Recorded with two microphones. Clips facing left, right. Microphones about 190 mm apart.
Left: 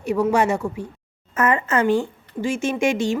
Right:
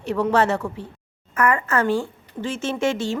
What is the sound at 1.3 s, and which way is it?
A woman's voice, 20° left (ahead or behind).